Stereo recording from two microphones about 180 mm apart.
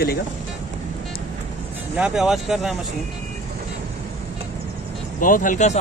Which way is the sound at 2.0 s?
5° right (ahead or behind).